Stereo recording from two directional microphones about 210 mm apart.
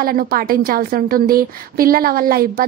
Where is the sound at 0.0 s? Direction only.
45° right (ahead or behind).